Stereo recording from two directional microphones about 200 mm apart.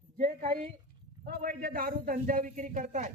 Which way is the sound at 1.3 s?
45° right (ahead or behind).